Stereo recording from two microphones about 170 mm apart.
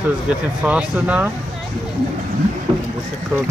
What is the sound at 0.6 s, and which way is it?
Speech, 5° right (ahead or behind).